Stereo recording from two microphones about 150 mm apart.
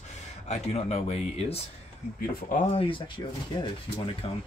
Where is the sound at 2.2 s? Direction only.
65° left (ahead or behind).